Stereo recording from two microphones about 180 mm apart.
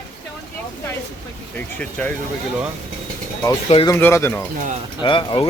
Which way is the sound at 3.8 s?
15° left (ahead or behind).